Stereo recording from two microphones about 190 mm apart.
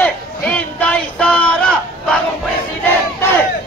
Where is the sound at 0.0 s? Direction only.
5° left (ahead or behind).